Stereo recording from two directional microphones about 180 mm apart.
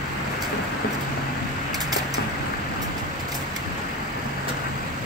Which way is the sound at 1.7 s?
20° right (ahead or behind).